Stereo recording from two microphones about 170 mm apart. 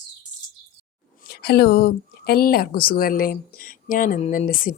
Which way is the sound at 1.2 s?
70° left (ahead or behind).